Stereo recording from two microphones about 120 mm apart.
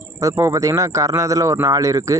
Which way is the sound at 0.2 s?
25° right (ahead or behind).